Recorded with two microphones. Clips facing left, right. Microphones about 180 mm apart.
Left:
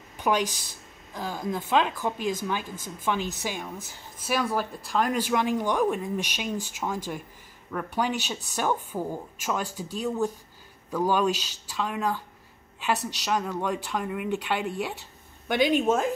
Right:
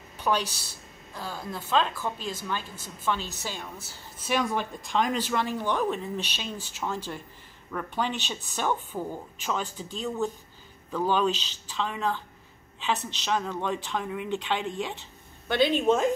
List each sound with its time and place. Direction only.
0.2 s a woman's voice: 15° left (ahead or behind)